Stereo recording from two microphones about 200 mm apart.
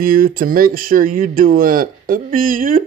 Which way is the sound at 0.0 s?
45° right (ahead or behind).